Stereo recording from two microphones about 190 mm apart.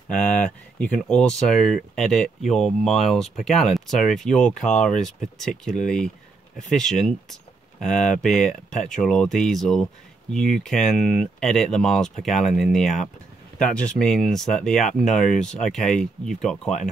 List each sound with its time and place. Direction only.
0.1 s speech: 5° left (ahead or behind)